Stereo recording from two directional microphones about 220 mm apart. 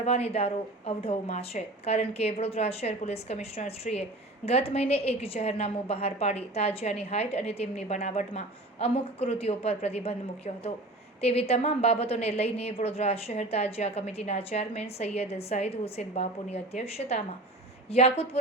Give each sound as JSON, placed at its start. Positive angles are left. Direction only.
{"t": 0.0, "sound": "a woman's voice", "side_deg": 25}